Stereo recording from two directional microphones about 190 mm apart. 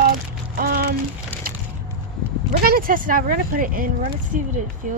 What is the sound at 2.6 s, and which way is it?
Speech, 50° right (ahead or behind).